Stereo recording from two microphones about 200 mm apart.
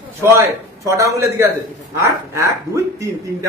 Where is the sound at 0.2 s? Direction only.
15° right (ahead or behind).